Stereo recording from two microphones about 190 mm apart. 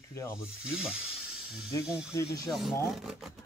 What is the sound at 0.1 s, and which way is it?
Speech, 15° left (ahead or behind).